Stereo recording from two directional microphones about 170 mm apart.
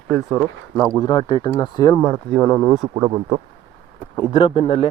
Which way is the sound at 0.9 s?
20° left (ahead or behind).